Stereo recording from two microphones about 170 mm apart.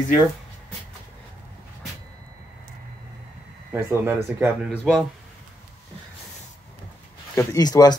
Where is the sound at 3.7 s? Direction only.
15° right (ahead or behind).